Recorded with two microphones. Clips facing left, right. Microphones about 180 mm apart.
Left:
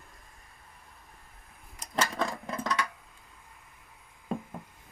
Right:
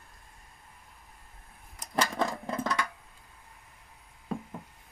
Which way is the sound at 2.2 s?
20° right (ahead or behind).